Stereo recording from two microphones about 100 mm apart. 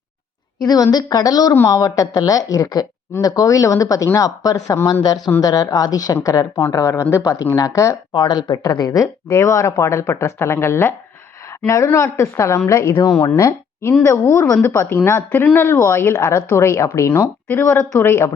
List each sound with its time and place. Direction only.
0.6 s speech: 40° left (ahead or behind)
8.1 s speech: 45° left (ahead or behind); by 18.3 s 25° left (ahead or behind)